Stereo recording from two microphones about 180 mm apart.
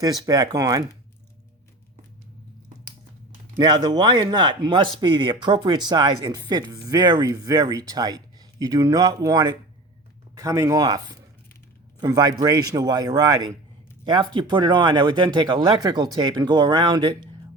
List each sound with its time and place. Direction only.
0.0 s speech: 20° right (ahead or behind)
3.8 s speech: 25° right (ahead or behind)